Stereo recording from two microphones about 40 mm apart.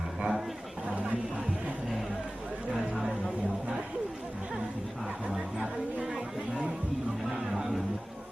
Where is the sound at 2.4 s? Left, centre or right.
Right.